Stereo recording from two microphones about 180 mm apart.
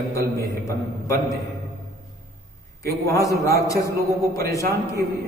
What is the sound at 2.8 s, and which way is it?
A man's voice, 15° left (ahead or behind).